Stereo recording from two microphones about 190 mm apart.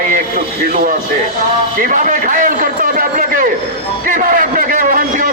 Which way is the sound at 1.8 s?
45° right (ahead or behind).